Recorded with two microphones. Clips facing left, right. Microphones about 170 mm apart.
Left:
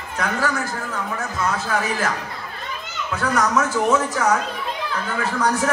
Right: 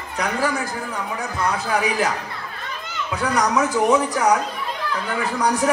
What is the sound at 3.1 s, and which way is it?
A man's voice, 15° right (ahead or behind).